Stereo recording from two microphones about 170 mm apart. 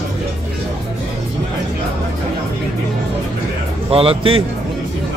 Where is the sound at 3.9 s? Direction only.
35° right (ahead or behind).